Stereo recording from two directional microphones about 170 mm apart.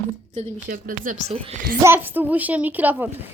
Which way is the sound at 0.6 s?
55° right (ahead or behind).